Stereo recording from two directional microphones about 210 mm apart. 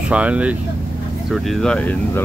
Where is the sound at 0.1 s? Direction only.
5° right (ahead or behind).